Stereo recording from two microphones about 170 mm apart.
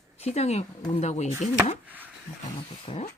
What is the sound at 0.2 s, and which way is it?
Speech, 40° left (ahead or behind).